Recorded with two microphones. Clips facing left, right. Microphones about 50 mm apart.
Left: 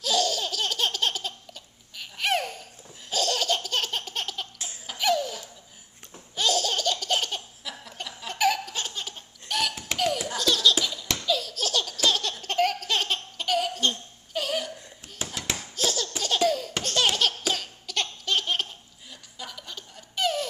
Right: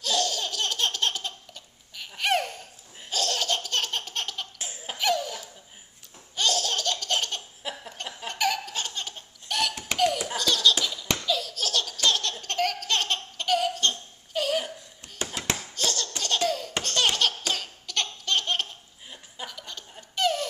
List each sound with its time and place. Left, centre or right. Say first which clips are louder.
0.0 s laughter: left 2 dB; centre
4.6 s laughter: right 2 dB; right
4.9 s laughter: left 1 dB; centre
7.6 s laughter: right 7 dB; right
8.3 s laughter: left 3 dB; centre